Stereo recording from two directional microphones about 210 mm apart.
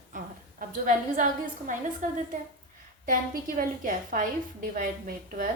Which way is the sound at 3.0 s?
40° right (ahead or behind).